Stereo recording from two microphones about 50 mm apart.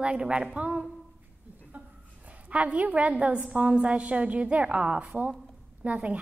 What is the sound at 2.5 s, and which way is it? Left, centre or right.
A woman's voice, right.